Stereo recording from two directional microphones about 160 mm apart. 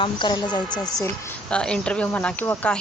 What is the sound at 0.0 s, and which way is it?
Speech, 30° left (ahead or behind).